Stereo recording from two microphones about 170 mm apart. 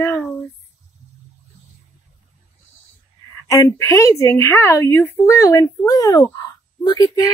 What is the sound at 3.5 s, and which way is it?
Speech, 15° left (ahead or behind).